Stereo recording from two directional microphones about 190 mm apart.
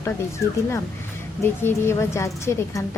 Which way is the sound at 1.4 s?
10° left (ahead or behind).